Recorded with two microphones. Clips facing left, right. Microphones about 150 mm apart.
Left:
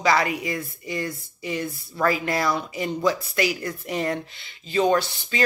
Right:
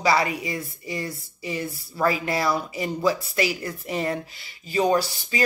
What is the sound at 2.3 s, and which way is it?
Speech, 5° right (ahead or behind).